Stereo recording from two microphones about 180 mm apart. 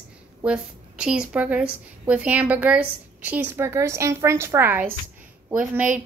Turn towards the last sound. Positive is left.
turn(degrees=-10)  # may be behind; listen again after turning